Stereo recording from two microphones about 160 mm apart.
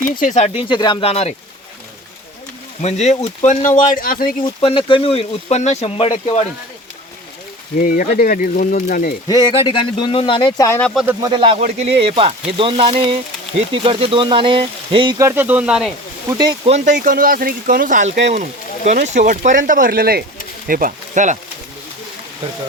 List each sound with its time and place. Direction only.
0.0 s speech: 55° left (ahead or behind)
0.5 s speech: 30° left (ahead or behind)
2.8 s speech: 45° left (ahead or behind); by 4.4 s 65° left (ahead or behind)
4.4 s speech: 30° left (ahead or behind)
7.8 s speech: 60° left (ahead or behind)
9.2 s speech: 25° left (ahead or behind)
10.6 s speech: 15° left (ahead or behind)
11.0 s speech: 15° right (ahead or behind)
11.3 s speech: 30° right (ahead or behind)
15.2 s speech: 15° right (ahead or behind)
16.6 s speech: 50° right (ahead or behind)
18.2 s speech: 90° right
18.9 s speech: 45° right (ahead or behind)